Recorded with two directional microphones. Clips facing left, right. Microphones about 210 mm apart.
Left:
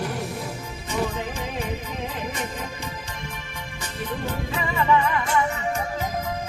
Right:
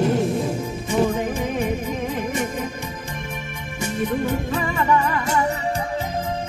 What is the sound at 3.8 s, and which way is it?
Music, 50° right (ahead or behind).